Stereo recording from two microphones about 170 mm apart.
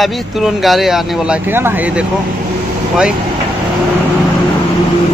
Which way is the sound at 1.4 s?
10° right (ahead or behind).